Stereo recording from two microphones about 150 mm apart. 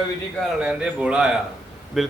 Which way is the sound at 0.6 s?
5° right (ahead or behind).